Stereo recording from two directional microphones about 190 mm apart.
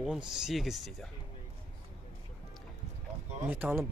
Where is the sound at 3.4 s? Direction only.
10° right (ahead or behind).